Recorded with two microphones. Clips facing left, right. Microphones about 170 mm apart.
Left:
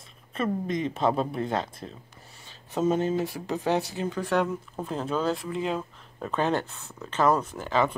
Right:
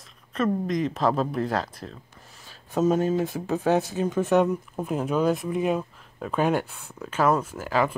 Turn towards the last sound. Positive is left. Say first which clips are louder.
# right 1 dB
turn(degrees=-5)  # may be behind; listen again after turning